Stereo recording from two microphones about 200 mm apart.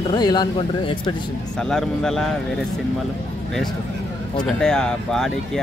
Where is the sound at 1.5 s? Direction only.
5° left (ahead or behind).